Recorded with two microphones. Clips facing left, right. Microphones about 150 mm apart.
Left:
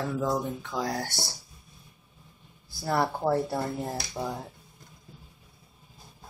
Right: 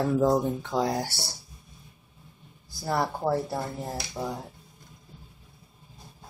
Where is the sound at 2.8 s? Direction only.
Centre (ahead or behind).